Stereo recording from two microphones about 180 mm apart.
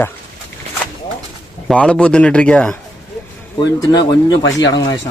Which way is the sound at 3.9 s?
20° left (ahead or behind).